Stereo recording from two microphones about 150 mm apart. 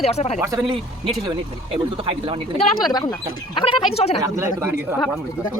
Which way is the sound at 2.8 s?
25° left (ahead or behind).